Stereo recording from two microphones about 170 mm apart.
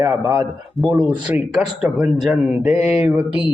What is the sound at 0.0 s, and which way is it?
Speech, 20° right (ahead or behind).